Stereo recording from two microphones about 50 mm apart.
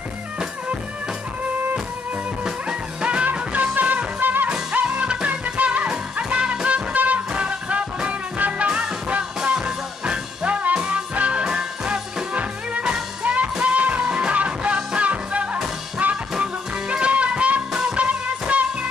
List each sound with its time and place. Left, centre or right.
3.0 s music: right
3.5 s music: right
5.0 s music: right
5.3 s music: right
9.4 s music: centre
12.4 s music: right